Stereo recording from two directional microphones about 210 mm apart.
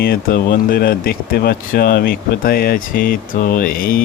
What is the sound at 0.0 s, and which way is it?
Speech, 45° left (ahead or behind).